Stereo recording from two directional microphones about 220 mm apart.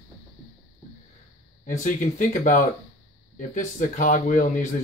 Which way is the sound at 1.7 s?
35° left (ahead or behind).